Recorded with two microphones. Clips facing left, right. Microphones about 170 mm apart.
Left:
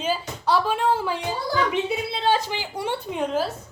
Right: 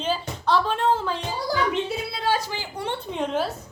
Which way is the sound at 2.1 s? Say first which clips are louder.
Left 3 dB; 25° left (ahead or behind).